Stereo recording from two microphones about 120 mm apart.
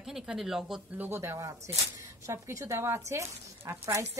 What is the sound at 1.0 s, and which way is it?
Speech, 20° right (ahead or behind).